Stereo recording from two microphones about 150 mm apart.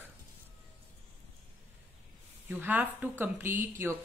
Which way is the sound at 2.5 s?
10° right (ahead or behind).